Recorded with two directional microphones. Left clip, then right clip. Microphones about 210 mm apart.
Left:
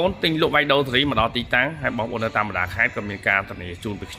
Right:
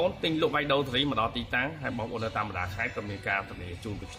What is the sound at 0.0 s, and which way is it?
Speech, 30° left (ahead or behind).